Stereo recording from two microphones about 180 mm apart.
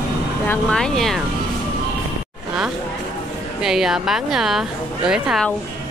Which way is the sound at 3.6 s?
Centre (ahead or behind).